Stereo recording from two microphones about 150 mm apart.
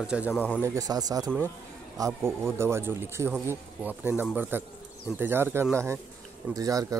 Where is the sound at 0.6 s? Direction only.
20° right (ahead or behind).